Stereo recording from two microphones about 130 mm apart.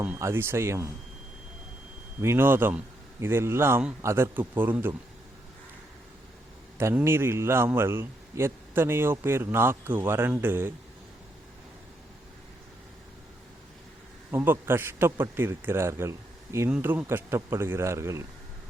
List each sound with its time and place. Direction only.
0.0 s a man's voice: 20° right (ahead or behind)
2.2 s a man's voice: 15° right (ahead or behind)
6.7 s a man's voice: 20° right (ahead or behind)
14.3 s a man's voice: 20° right (ahead or behind)